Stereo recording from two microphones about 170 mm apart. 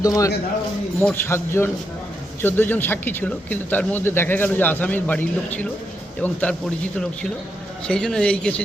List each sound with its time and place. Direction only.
0.0 s a man's voice: 20° left (ahead or behind)